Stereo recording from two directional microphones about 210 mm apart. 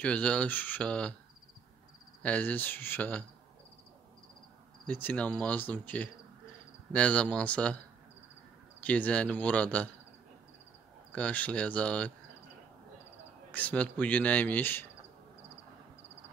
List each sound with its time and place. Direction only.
0.0 s speech: 5° left (ahead or behind)
2.2 s speech: 10° left (ahead or behind)
4.8 s speech: 5° left (ahead or behind)
8.8 s speech: 5° left (ahead or behind)
11.1 s speech: 5° left (ahead or behind)
13.5 s speech: 5° left (ahead or behind)